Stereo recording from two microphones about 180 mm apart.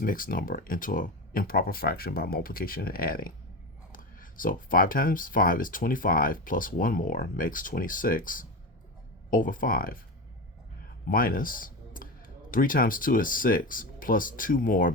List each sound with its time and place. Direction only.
0.0 s speech: 50° left (ahead or behind)
11.1 s speech: 50° left (ahead or behind)